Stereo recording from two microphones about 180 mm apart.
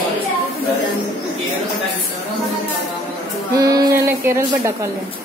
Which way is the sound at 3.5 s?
20° right (ahead or behind).